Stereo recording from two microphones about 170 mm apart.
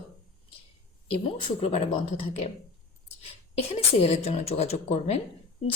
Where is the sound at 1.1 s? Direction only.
35° left (ahead or behind).